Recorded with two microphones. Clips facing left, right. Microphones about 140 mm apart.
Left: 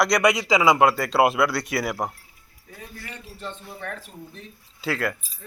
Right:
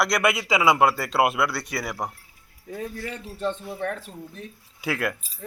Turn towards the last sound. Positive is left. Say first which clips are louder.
# left 1 dB
turn(degrees=-20)  # may be behind; listen again after turning